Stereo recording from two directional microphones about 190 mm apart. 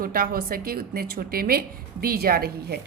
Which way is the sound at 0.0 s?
50° right (ahead or behind).